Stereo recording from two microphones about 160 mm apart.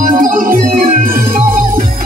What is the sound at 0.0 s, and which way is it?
Music, 60° right (ahead or behind).